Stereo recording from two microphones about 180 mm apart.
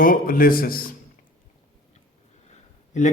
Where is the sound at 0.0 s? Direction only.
50° left (ahead or behind).